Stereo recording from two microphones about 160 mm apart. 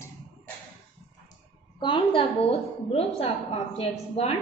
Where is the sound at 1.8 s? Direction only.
30° left (ahead or behind).